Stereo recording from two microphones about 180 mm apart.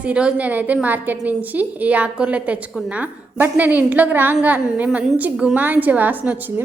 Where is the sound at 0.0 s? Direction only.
5° right (ahead or behind).